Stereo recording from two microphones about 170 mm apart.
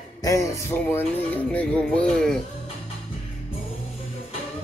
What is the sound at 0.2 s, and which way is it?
Speech, 20° left (ahead or behind).